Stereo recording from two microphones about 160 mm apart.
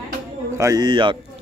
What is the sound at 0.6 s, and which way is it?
Speech, 25° right (ahead or behind).